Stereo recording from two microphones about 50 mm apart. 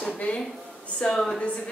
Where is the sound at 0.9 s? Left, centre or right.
Centre.